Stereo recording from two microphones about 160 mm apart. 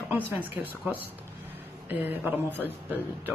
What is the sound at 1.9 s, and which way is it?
Speech, 10° right (ahead or behind).